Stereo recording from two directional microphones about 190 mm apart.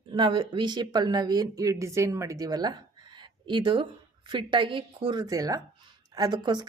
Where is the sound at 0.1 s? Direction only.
25° right (ahead or behind).